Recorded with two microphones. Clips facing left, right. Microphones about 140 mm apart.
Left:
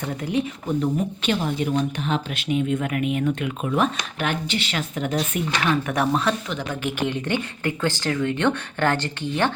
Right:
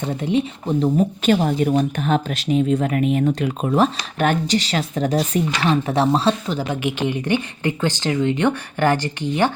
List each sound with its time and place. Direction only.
0.0 s speech: 25° right (ahead or behind)
1.2 s speech: 45° right (ahead or behind)
6.7 s speech: 15° right (ahead or behind)